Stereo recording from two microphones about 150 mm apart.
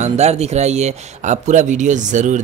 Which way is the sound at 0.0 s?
45° right (ahead or behind).